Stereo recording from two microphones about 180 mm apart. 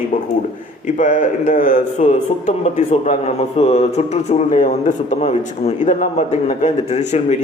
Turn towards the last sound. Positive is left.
turn(degrees=40)  # may be behind; listen again after turning